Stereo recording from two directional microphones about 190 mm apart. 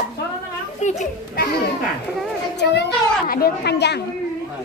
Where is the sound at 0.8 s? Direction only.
35° left (ahead or behind).